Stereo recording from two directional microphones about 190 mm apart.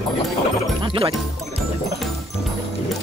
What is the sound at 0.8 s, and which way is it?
Speech, 25° right (ahead or behind).